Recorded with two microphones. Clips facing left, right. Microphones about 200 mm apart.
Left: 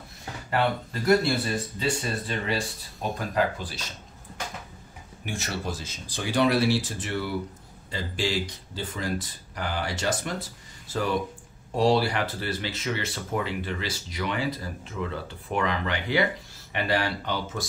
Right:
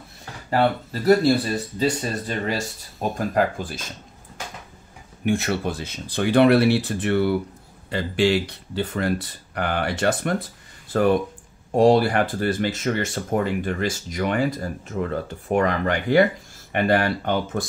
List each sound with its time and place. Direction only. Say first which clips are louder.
0.5 s speech: right 5 dB; 35° right (ahead or behind); by 3.8 s 50° right (ahead or behind)
5.2 s speech: right 10 dB; 60° right (ahead or behind)